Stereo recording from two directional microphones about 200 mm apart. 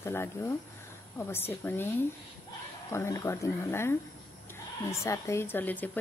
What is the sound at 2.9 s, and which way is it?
Speech, 15° left (ahead or behind).